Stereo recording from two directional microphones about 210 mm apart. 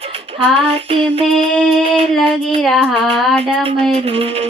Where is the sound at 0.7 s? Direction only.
25° right (ahead or behind).